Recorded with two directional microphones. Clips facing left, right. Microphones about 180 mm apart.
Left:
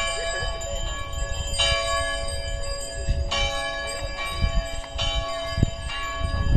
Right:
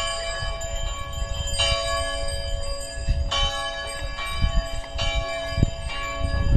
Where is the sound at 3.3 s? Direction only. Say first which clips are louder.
Left 1 dB; 15° left (ahead or behind).